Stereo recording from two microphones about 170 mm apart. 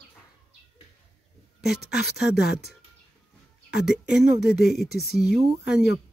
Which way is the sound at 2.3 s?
70° left (ahead or behind).